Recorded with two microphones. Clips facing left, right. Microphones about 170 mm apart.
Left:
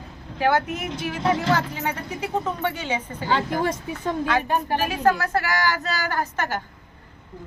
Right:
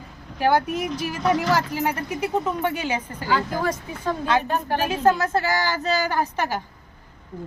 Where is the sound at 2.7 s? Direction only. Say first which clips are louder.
Right 1 dB; 10° right (ahead or behind).